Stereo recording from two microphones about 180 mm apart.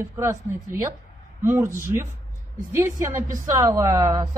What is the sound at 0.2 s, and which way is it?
A woman's voice, 15° right (ahead or behind).